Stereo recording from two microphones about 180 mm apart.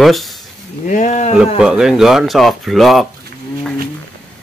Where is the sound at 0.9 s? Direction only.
45° left (ahead or behind).